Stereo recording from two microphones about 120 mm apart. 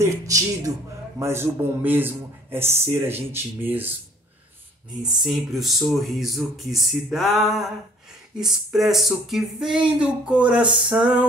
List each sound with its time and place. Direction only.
0.0 s a man's voice: 25° right (ahead or behind)
5.0 s a man's voice: centre (ahead or behind)